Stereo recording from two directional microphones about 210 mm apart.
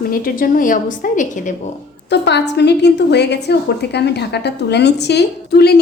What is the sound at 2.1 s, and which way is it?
A woman's voice, 55° left (ahead or behind).